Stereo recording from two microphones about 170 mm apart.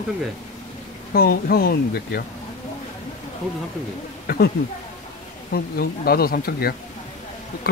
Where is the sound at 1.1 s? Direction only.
60° left (ahead or behind).